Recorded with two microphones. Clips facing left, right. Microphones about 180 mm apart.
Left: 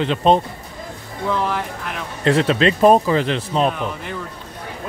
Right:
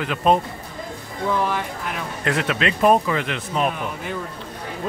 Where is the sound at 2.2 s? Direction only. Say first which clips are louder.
Left 7 dB; 30° left (ahead or behind).